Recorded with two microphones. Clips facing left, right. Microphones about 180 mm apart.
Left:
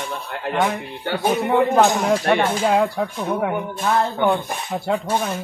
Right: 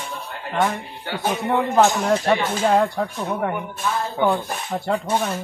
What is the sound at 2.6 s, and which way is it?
Speech, 5° left (ahead or behind).